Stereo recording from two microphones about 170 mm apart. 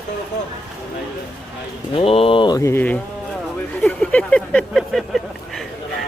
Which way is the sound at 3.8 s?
5° left (ahead or behind).